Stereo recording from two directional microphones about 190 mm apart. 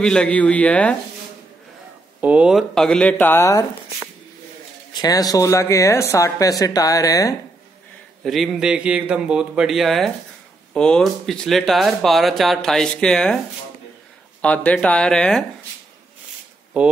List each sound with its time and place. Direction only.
0.0 s speech: 5° left (ahead or behind)
2.2 s speech: 5° right (ahead or behind); by 3.6 s 15° left (ahead or behind)
4.9 s speech: 20° left (ahead or behind)
8.2 s speech: centre (ahead or behind)
14.4 s speech: 5° left (ahead or behind)
16.8 s speech: 10° right (ahead or behind)